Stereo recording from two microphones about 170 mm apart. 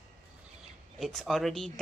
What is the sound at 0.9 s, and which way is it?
Speech, centre (ahead or behind).